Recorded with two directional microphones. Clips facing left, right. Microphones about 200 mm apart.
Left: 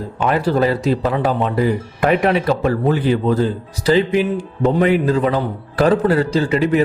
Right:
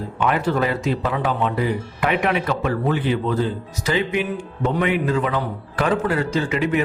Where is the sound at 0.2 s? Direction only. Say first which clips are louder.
Left 4 dB; 35° left (ahead or behind).